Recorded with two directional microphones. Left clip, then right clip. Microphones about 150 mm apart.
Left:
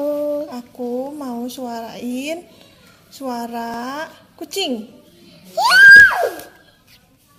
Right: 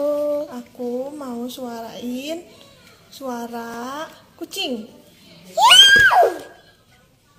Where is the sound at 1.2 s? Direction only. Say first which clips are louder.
Left 2 dB; 35° left (ahead or behind).